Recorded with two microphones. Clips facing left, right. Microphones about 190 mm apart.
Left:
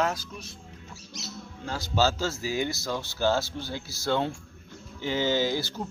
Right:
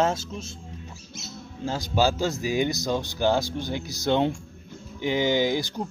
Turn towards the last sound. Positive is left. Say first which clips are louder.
# right 3 dB
turn(degrees=-15)  # may be behind; listen again after turning